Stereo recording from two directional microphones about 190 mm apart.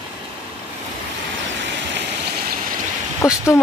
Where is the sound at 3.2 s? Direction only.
15° left (ahead or behind).